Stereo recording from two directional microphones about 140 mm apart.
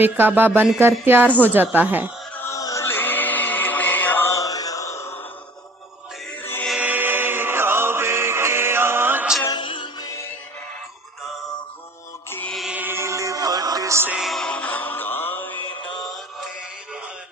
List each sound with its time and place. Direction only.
0.0 s speech: 15° right (ahead or behind)
2.4 s music: 20° left (ahead or behind)
6.4 s chant: 15° left (ahead or behind)
6.7 s chant: 10° right (ahead or behind)
9.4 s music: 30° left (ahead or behind)
12.3 s music: 10° left (ahead or behind)
12.5 s music: 5° right (ahead or behind)
14.2 s music: centre (ahead or behind)